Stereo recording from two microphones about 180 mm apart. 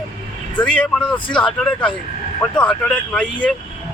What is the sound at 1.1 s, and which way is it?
Speech, 25° left (ahead or behind).